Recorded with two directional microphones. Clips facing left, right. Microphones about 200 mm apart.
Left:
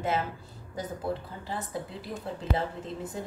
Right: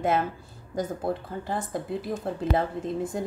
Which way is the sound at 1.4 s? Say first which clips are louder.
Right 5 dB; 50° right (ahead or behind).